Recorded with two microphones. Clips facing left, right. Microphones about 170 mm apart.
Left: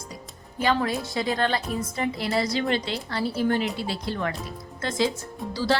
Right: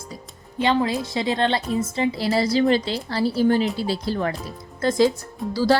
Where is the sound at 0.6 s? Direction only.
20° right (ahead or behind).